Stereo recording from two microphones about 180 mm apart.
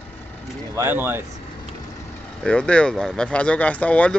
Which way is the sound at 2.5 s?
5° left (ahead or behind).